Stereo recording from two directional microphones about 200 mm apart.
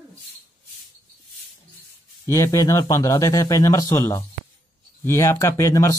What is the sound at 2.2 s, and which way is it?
Speech, 15° left (ahead or behind).